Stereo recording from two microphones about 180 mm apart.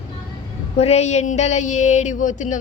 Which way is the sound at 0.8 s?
35° left (ahead or behind).